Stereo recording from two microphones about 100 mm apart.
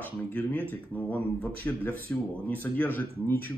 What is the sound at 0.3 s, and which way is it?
Speech, 15° left (ahead or behind).